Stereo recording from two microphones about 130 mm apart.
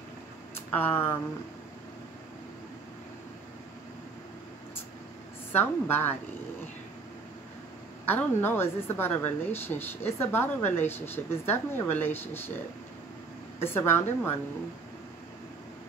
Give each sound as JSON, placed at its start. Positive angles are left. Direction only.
{"t": 0.6, "sound": "speech", "side_deg": 15}
{"t": 5.5, "sound": "speech", "side_deg": 15}
{"t": 8.0, "sound": "speech", "side_deg": 15}
{"t": 13.6, "sound": "speech", "side_deg": 15}